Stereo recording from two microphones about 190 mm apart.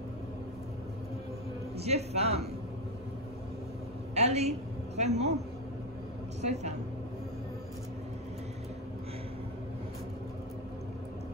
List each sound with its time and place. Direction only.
1.8 s a man's voice: 35° right (ahead or behind)
4.1 s a woman's voice: 35° right (ahead or behind)
6.4 s a man's voice: 35° right (ahead or behind)